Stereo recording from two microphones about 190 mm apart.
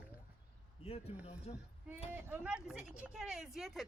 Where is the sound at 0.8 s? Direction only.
30° left (ahead or behind).